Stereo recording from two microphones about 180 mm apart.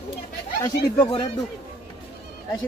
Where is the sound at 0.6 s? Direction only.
20° left (ahead or behind).